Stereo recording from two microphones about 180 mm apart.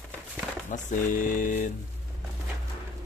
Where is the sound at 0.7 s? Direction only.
45° left (ahead or behind).